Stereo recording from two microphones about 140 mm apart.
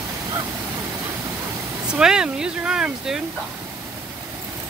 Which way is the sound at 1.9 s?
5° right (ahead or behind).